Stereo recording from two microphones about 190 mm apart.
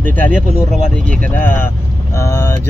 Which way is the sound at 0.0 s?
10° left (ahead or behind).